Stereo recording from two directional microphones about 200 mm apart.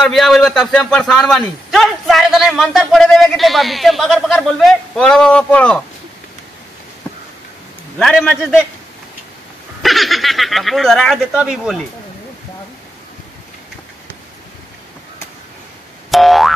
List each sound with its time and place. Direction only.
0.0 s a man's voice: centre (ahead or behind)
8.0 s a man's voice: 5° left (ahead or behind)
9.8 s a man's voice: centre (ahead or behind)
16.1 s boing: centre (ahead or behind)